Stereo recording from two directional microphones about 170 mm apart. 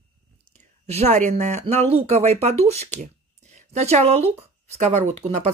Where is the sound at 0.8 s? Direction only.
40° right (ahead or behind).